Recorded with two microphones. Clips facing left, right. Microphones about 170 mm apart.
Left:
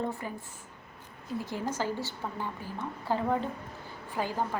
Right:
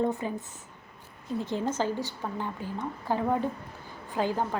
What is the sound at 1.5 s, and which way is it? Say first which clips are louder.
A woman's voice: right 4 dB; 20° right (ahead or behind).